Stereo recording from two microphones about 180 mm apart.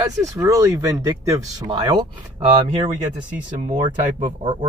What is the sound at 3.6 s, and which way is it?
Speech, 40° right (ahead or behind).